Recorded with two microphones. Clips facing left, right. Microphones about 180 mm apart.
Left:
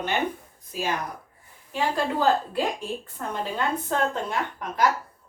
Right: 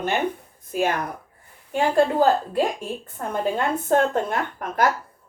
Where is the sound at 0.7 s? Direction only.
55° right (ahead or behind).